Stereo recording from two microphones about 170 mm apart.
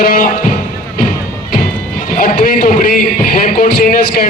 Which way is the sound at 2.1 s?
55° left (ahead or behind).